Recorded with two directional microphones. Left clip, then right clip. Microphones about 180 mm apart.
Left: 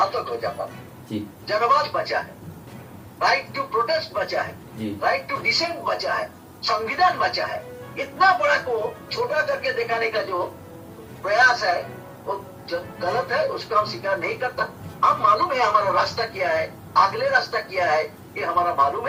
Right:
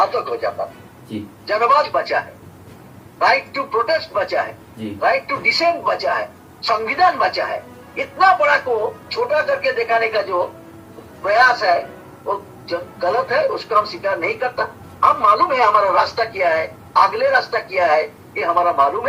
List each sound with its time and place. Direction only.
0.0 s speech: 50° right (ahead or behind)